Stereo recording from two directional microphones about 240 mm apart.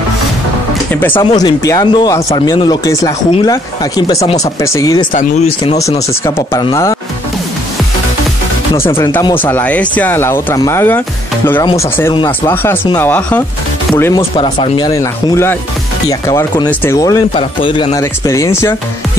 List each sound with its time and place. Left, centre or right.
1.1 s speech: centre
5.1 s speech: left
5.8 s speech: centre
8.7 s speech: centre
14.3 s speech: left